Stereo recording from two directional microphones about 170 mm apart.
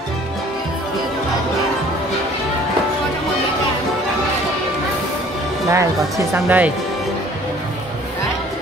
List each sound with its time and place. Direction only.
5.7 s speech: 15° right (ahead or behind)